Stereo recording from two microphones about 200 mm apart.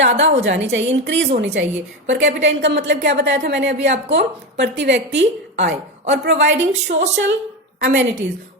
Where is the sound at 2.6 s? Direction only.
60° right (ahead or behind).